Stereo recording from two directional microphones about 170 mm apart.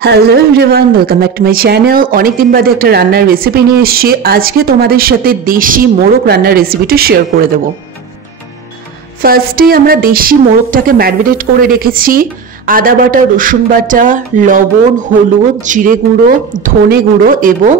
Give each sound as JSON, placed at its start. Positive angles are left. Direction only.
{"t": 0.0, "sound": "speech", "side_deg": -70}
{"t": 9.2, "sound": "speech", "side_deg": -60}
{"t": 15.6, "sound": "a woman's voice", "side_deg": -50}